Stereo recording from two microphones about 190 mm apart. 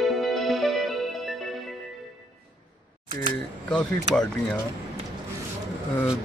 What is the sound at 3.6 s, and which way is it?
Speech, 5° left (ahead or behind).